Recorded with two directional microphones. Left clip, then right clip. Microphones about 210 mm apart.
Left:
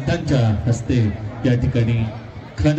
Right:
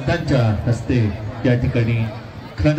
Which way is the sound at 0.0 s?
15° left (ahead or behind).